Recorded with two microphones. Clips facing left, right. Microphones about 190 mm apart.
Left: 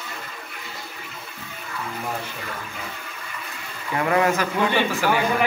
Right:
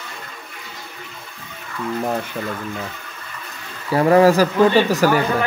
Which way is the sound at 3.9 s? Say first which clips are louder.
Right 8 dB; 35° right (ahead or behind).